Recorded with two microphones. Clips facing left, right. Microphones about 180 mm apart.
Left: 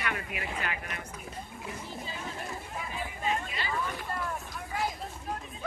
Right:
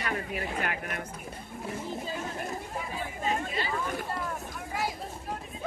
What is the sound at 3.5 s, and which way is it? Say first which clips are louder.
Vehicle: right 2 dB; 45° right (ahead or behind).